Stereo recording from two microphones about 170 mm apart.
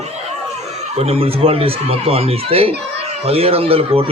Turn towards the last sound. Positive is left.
turn(degrees=-35)  # may be behind; listen again after turning